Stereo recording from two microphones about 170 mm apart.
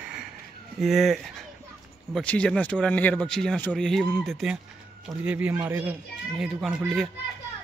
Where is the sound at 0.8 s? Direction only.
Centre (ahead or behind).